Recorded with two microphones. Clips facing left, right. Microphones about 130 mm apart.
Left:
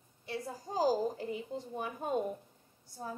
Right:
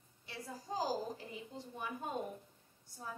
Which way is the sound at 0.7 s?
45° left (ahead or behind).